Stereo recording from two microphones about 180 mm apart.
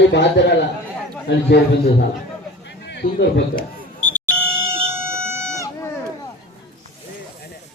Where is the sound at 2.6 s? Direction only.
75° left (ahead or behind).